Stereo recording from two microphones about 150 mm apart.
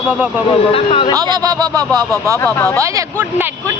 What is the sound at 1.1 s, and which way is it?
Speech, 25° right (ahead or behind).